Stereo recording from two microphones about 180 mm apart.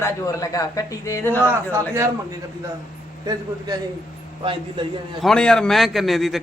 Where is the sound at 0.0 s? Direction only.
15° left (ahead or behind).